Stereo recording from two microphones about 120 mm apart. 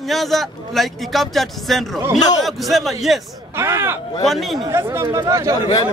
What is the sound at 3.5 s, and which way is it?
Speech, 20° right (ahead or behind).